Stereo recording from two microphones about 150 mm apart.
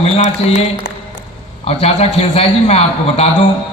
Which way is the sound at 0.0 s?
50° left (ahead or behind).